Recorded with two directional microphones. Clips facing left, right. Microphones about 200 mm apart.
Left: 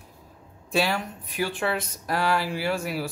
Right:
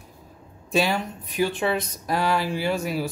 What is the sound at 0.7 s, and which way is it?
Speech, 20° right (ahead or behind).